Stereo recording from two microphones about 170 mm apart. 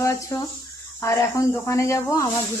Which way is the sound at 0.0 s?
20° left (ahead or behind).